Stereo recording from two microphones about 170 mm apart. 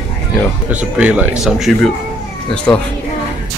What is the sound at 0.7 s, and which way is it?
Speech, 10° right (ahead or behind).